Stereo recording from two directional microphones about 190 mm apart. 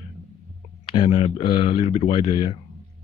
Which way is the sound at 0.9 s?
25° left (ahead or behind).